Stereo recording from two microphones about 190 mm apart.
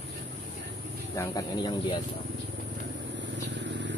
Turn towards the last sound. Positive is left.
turn(degrees=-70)  # may be behind; listen again after turning